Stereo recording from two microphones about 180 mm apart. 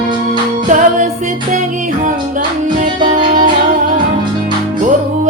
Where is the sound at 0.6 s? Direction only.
45° right (ahead or behind).